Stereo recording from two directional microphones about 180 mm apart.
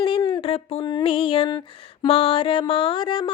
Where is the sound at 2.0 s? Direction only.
30° left (ahead or behind).